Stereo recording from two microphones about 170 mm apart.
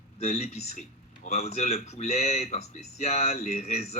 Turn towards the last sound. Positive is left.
turn(degrees=40)  # may be behind; listen again after turning